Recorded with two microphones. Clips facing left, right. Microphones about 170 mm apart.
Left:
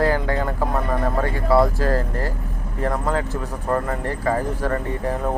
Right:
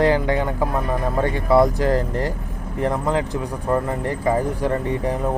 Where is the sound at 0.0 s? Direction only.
20° right (ahead or behind).